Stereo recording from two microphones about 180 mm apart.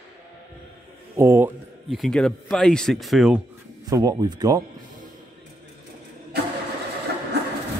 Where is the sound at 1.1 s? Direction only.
15° right (ahead or behind).